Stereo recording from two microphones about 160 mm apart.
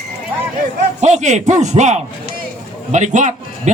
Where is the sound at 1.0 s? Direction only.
45° right (ahead or behind).